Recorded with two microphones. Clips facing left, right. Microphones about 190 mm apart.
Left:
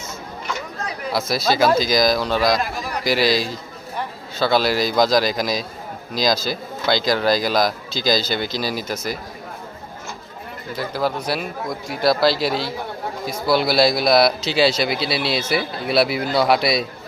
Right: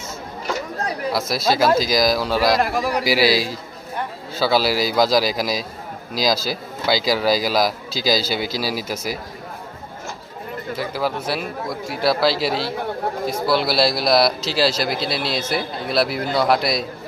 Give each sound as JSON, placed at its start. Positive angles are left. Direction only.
{"t": 1.1, "sound": "a man's voice", "side_deg": 0}
{"t": 2.6, "sound": "a man's voice", "side_deg": -75}
{"t": 3.0, "sound": "a man's voice", "side_deg": -5}
{"t": 10.8, "sound": "a man's voice", "side_deg": -5}